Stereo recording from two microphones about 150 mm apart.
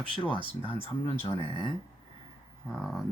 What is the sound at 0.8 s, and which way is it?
Speech, 40° left (ahead or behind).